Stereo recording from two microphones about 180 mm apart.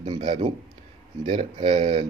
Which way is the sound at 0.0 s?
30° right (ahead or behind).